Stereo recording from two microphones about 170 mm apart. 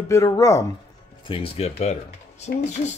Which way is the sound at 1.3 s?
35° left (ahead or behind).